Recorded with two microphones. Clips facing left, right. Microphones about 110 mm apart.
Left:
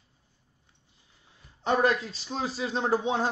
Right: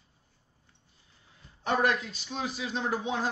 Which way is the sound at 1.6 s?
30° left (ahead or behind).